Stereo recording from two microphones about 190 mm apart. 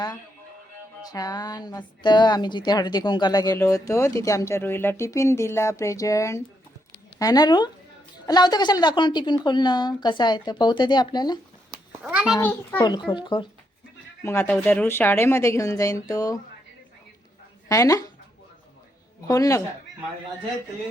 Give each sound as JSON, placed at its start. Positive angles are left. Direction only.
{"t": 1.1, "sound": "a woman's voice", "side_deg": 20}
{"t": 11.7, "sound": "a sound", "side_deg": -5}
{"t": 12.4, "sound": "speech", "side_deg": 10}
{"t": 13.1, "sound": "a woman's voice", "side_deg": 25}
{"t": 14.3, "sound": "speech", "side_deg": 10}
{"t": 17.7, "sound": "speech", "side_deg": 15}
{"t": 19.3, "sound": "speech", "side_deg": 15}